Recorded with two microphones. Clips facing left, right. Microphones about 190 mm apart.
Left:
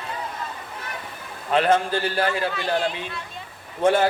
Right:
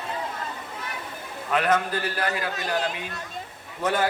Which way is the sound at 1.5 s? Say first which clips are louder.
Left 4 dB; 30° left (ahead or behind).